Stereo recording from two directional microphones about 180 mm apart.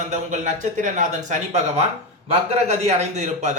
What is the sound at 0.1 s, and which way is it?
A man's voice, 40° right (ahead or behind).